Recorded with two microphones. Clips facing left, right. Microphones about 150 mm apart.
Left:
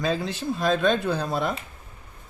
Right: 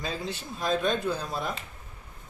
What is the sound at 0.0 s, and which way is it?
Speech, 90° left.